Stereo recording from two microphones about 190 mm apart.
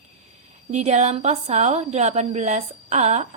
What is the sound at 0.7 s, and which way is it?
A woman's voice, 35° right (ahead or behind).